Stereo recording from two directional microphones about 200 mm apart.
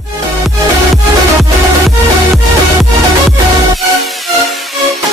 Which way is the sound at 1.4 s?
Centre (ahead or behind).